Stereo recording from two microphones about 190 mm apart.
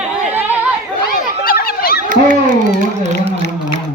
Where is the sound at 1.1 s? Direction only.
50° left (ahead or behind).